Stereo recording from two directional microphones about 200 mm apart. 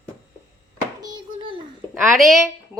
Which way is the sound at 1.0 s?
20° right (ahead or behind).